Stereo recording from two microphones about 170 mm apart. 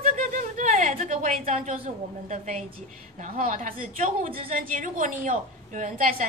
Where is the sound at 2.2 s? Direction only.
45° right (ahead or behind).